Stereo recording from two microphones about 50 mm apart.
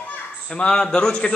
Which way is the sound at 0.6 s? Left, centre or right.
Centre.